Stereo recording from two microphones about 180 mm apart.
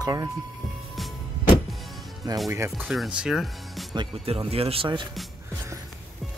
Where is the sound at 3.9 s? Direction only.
30° right (ahead or behind).